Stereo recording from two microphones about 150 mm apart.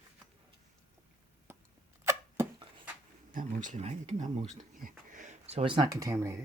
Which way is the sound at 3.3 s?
60° right (ahead or behind).